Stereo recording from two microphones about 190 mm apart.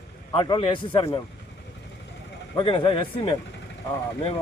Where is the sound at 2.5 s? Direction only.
25° left (ahead or behind).